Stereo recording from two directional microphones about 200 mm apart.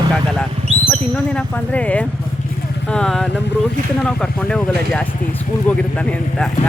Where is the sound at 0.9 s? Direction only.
5° left (ahead or behind).